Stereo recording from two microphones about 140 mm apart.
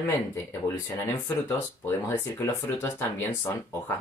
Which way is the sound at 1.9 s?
20° left (ahead or behind).